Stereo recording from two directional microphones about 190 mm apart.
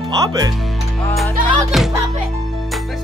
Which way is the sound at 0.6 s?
5° left (ahead or behind).